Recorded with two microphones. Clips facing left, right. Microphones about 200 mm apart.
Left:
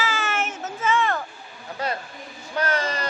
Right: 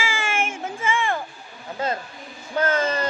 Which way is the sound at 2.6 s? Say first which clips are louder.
Right 3 dB; 25° right (ahead or behind).